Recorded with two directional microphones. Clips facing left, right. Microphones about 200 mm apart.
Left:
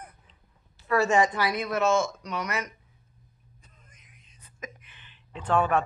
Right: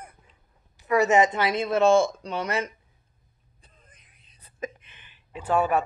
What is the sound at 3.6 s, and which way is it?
Whispering, 30° right (ahead or behind).